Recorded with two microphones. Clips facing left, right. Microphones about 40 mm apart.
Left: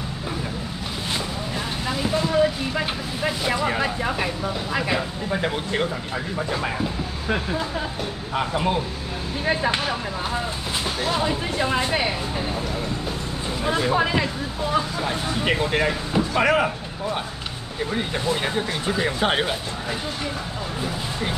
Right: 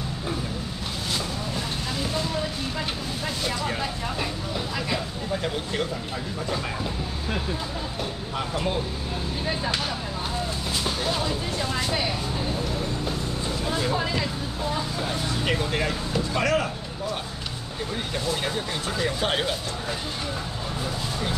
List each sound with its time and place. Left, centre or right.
1.9 s vehicle: centre
6.5 s speech: left
13.7 s speech: left